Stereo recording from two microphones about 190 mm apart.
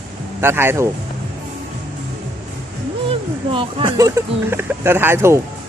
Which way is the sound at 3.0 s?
30° right (ahead or behind).